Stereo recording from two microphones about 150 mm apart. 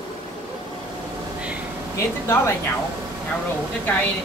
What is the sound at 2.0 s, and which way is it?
Speech, 15° left (ahead or behind).